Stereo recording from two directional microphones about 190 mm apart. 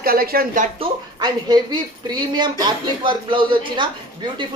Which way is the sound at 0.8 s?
20° right (ahead or behind).